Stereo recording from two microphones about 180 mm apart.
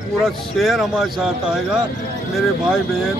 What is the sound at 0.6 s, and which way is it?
Speech, centre (ahead or behind).